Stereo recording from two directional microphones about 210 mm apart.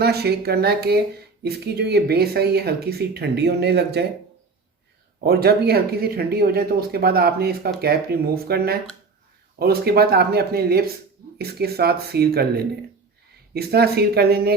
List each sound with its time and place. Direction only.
0.0 s speech: 50° right (ahead or behind)
5.2 s speech: 50° right (ahead or behind)